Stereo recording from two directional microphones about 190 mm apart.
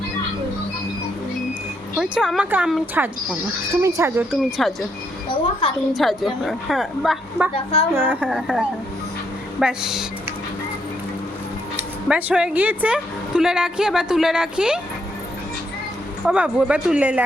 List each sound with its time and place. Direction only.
2.0 s a woman's voice: 5° right (ahead or behind)
5.3 s a woman's voice: 30° left (ahead or behind)
5.9 s a woman's voice: centre (ahead or behind)
7.5 s a woman's voice: 30° left (ahead or behind)
7.9 s a woman's voice: 10° right (ahead or behind)
12.0 s a woman's voice: 5° right (ahead or behind)
16.2 s a woman's voice: 5° right (ahead or behind)